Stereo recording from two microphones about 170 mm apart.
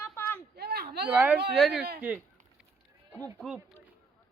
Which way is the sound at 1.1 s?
10° right (ahead or behind).